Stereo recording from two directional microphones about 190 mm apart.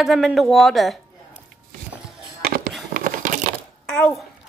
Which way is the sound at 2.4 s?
50° right (ahead or behind).